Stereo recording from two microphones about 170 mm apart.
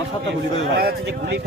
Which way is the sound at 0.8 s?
70° right (ahead or behind).